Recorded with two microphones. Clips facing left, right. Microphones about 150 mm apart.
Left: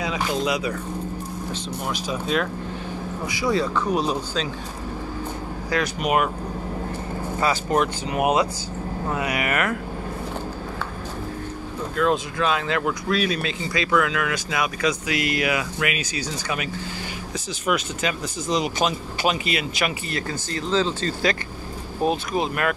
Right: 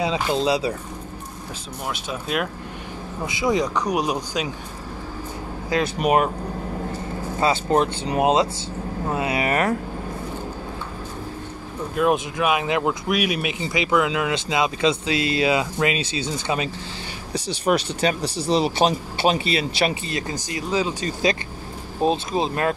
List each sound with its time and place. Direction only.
0.0 s speech: 30° right (ahead or behind)
2.0 s speech: 5° right (ahead or behind)
3.3 s speech: 20° right (ahead or behind)
5.9 s speech: 35° right (ahead or behind)
7.3 s speech: 30° right (ahead or behind)
12.0 s speech: 15° right (ahead or behind); by 20.0 s 30° right (ahead or behind)
20.1 s speech: 20° right (ahead or behind)